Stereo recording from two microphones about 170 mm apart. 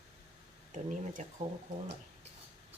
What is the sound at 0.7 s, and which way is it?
Speech, 50° right (ahead or behind).